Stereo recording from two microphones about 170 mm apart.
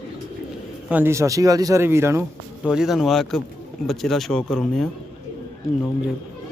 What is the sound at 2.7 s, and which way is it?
Speech, 5° right (ahead or behind).